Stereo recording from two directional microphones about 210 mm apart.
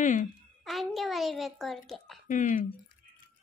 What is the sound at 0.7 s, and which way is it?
Speech, centre (ahead or behind).